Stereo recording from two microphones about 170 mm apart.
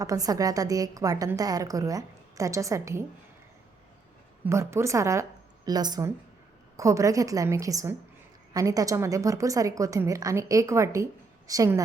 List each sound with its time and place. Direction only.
0.0 s a woman's voice: 20° right (ahead or behind)
4.4 s a woman's voice: 15° right (ahead or behind)